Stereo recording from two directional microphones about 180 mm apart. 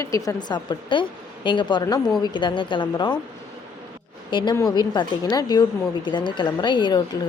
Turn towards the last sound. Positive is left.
turn(degrees=25)  # may be behind; listen again after turning